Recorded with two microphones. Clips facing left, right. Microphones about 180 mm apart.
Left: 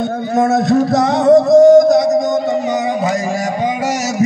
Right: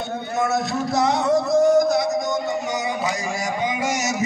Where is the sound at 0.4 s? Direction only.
50° left (ahead or behind).